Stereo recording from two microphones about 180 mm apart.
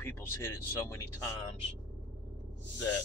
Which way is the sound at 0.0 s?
10° left (ahead or behind).